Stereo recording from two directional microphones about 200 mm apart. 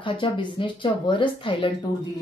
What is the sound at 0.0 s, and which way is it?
A woman's voice, 25° left (ahead or behind).